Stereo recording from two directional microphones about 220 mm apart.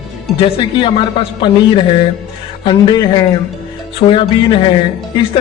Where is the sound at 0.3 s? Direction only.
25° left (ahead or behind).